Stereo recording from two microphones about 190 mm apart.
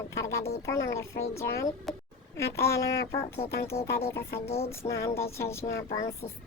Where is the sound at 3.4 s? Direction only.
40° left (ahead or behind).